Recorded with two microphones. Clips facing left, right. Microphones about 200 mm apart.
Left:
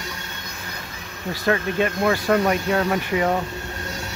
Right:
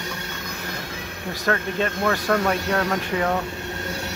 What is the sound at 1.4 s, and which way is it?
Speech, 10° left (ahead or behind).